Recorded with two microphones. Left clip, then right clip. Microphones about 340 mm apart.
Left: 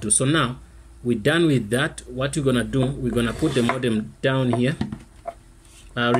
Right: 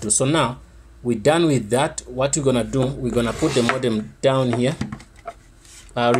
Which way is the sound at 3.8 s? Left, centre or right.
Centre.